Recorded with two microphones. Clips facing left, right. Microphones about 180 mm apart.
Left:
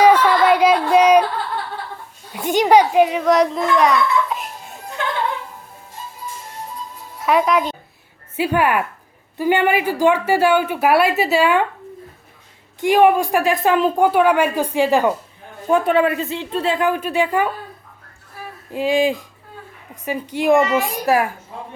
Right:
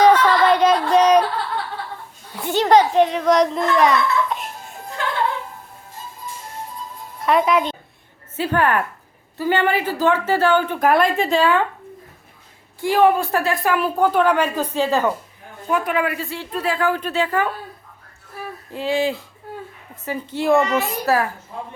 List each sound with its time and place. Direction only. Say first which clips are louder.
0.0 s a sound: left 1 dB; 10° left (ahead or behind)
2.3 s a child's voice: left 2 dB; 15° left (ahead or behind)
7.3 s a woman's voice: left 1 dB; centre (ahead or behind)
12.8 s a woman's voice: left 2 dB; 15° left (ahead or behind)
15.7 s a woman's voice: left 5 dB; 30° left (ahead or behind); by 17.5 s 15° left (ahead or behind)
18.7 s a woman's voice: left 4 dB; 15° left (ahead or behind)